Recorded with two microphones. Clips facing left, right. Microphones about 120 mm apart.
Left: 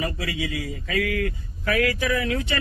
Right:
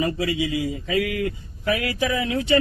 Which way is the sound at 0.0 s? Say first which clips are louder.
Right 5 dB; 20° right (ahead or behind).